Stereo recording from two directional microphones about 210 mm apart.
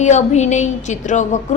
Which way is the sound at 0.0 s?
35° left (ahead or behind).